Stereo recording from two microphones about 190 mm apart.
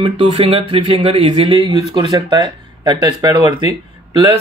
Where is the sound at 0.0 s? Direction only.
35° right (ahead or behind).